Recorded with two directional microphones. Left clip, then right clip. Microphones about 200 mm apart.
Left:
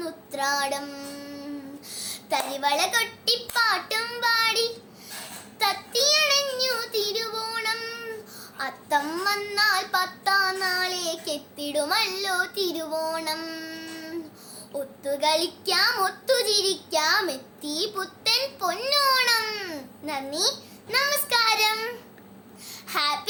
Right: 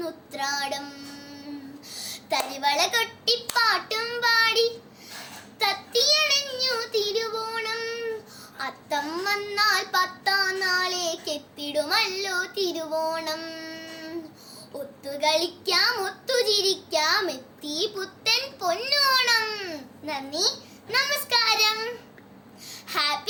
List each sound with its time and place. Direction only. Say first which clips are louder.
0.0 s child singing: left 2 dB; 15° left (ahead or behind)
1.9 s a child's voice: even; 15° left (ahead or behind)
3.5 s child singing: right 1 dB; 15° left (ahead or behind)
15.0 s a child's voice: even; 15° left (ahead or behind)
22.7 s babbling: even; 15° left (ahead or behind)